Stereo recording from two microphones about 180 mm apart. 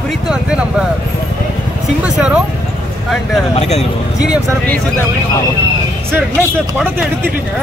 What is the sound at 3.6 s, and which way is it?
Speech, 35° left (ahead or behind).